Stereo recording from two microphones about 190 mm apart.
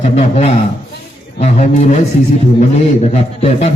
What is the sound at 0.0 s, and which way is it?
A man's voice, 35° left (ahead or behind).